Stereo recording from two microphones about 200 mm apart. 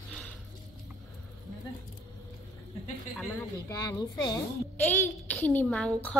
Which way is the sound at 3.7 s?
20° left (ahead or behind).